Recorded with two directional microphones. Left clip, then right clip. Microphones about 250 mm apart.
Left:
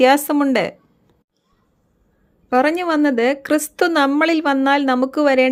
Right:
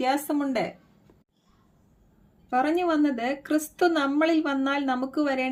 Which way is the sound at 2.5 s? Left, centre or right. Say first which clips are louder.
Left 7 dB; left.